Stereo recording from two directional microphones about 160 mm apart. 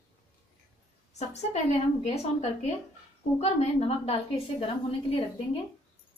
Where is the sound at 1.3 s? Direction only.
40° left (ahead or behind).